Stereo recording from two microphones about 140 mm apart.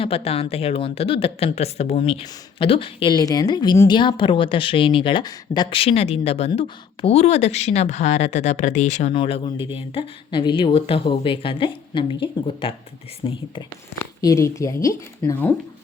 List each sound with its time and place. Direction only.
0.0 s speech: 45° left (ahead or behind)
9.1 s speech: 40° left (ahead or behind)
14.2 s speech: 25° left (ahead or behind)